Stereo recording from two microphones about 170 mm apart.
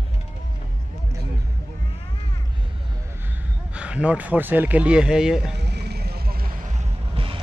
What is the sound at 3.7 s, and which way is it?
A man's voice, 5° right (ahead or behind).